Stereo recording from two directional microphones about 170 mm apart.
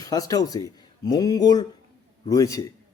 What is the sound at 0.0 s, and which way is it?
A man's voice, 20° left (ahead or behind).